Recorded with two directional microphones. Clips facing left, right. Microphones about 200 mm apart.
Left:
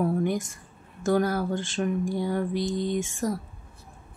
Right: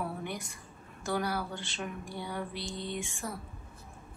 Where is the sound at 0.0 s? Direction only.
45° left (ahead or behind).